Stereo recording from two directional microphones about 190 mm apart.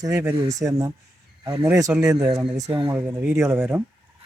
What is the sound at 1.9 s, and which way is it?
Speech, 5° right (ahead or behind).